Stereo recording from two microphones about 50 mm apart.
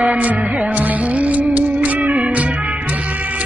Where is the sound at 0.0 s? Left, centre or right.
Right.